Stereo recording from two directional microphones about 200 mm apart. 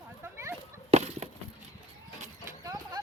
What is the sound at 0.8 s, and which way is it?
Chicken, 35° right (ahead or behind).